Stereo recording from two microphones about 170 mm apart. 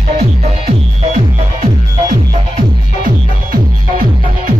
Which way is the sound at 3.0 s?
55° right (ahead or behind).